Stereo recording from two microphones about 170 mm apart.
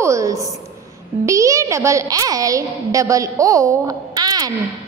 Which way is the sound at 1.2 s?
20° right (ahead or behind).